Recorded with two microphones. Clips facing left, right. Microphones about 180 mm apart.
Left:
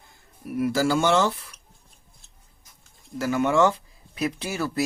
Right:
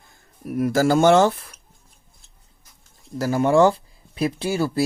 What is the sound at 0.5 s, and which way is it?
Speech, 45° right (ahead or behind).